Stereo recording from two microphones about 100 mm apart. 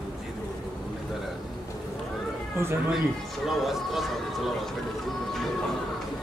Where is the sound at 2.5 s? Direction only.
25° right (ahead or behind).